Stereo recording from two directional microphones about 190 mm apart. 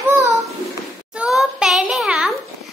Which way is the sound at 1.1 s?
5° right (ahead or behind).